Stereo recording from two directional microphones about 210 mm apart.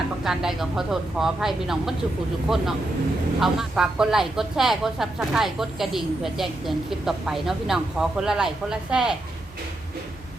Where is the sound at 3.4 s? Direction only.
Centre (ahead or behind).